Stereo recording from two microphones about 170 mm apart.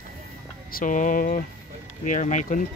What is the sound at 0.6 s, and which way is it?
Speech, 55° left (ahead or behind).